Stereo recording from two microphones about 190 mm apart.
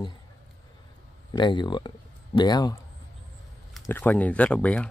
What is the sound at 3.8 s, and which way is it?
Speech, 10° left (ahead or behind).